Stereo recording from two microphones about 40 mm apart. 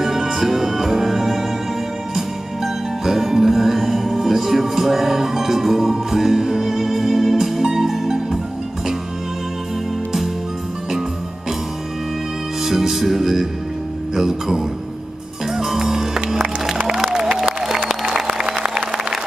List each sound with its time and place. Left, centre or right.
0.0 s music: centre
12.6 s music: centre
14.1 s speech: centre
15.5 s music: centre; by 19.1 s right